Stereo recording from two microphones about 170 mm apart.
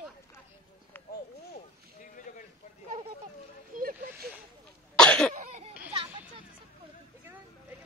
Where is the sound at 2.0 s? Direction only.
50° left (ahead or behind).